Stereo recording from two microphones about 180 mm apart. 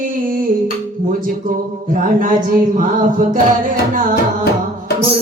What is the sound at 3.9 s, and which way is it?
Music, 45° right (ahead or behind).